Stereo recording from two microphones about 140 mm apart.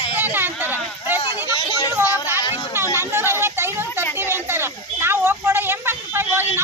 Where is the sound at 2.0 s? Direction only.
15° right (ahead or behind).